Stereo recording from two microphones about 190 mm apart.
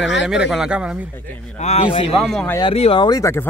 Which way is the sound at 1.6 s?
30° left (ahead or behind).